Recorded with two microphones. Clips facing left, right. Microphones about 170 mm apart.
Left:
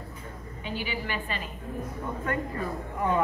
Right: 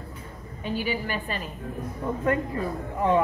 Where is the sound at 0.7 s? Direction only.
45° right (ahead or behind).